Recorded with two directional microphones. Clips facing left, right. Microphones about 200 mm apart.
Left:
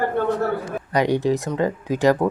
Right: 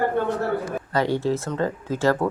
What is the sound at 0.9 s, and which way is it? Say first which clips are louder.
Speech: left 3 dB; 15° left (ahead or behind).